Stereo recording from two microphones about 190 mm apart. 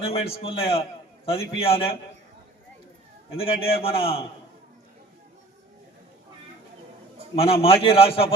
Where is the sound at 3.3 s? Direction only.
30° left (ahead or behind).